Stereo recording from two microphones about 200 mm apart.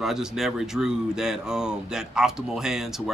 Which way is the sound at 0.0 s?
Centre (ahead or behind).